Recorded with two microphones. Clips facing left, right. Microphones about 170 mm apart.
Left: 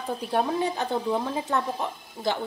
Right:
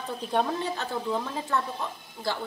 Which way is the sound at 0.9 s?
20° left (ahead or behind).